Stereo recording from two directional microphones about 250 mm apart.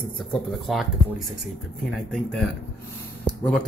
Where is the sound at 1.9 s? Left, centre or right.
Centre.